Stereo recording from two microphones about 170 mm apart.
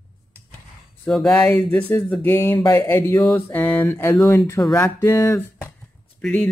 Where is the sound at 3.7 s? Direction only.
15° left (ahead or behind).